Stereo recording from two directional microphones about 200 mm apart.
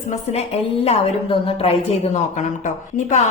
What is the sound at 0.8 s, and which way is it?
Speech, 30° left (ahead or behind).